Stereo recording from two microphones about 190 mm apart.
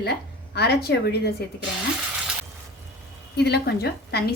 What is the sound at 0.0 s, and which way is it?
Speech, 60° left (ahead or behind).